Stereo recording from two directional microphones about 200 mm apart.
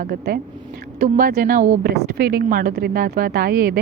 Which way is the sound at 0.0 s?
45° right (ahead or behind).